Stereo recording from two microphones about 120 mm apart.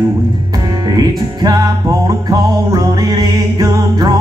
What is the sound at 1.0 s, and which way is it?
Music, 35° right (ahead or behind).